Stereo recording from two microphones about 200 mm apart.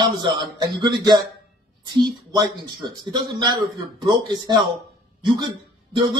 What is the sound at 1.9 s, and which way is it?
Speech, 20° right (ahead or behind).